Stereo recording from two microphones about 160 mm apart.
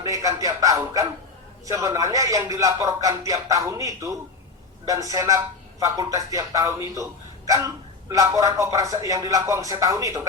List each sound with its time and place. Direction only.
0.0 s speech: 20° right (ahead or behind)